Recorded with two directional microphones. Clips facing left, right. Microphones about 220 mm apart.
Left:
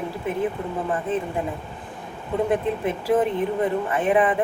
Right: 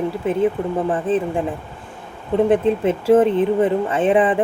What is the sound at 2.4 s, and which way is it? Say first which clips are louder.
Speech: right 7 dB; 25° right (ahead or behind).